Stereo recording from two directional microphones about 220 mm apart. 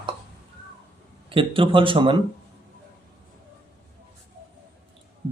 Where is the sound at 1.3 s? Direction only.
25° right (ahead or behind).